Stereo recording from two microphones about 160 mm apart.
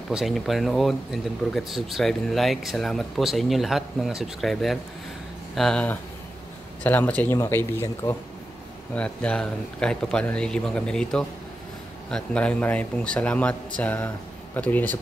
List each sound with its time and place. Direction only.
0.1 s speech: centre (ahead or behind); by 8.2 s 20° left (ahead or behind)
8.9 s speech: 5° left (ahead or behind)